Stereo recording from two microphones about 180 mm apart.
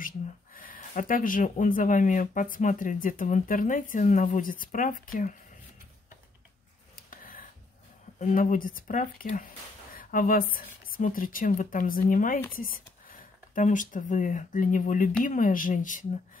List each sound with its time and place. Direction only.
0.6 s speech: 50° left (ahead or behind)
7.1 s a sound: 50° left (ahead or behind)
8.2 s speech: 45° left (ahead or behind)
13.6 s speech: 45° left (ahead or behind)